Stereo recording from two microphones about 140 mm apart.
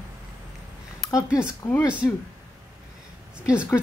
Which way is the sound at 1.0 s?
Centre (ahead or behind).